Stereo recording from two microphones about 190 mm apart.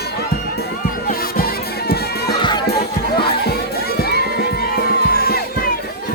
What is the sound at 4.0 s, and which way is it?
Crowd, 55° left (ahead or behind).